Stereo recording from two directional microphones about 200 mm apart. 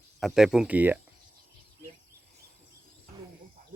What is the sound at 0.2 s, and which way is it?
Speech, centre (ahead or behind).